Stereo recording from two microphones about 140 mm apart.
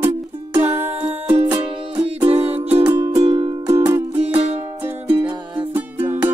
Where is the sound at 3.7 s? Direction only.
20° right (ahead or behind).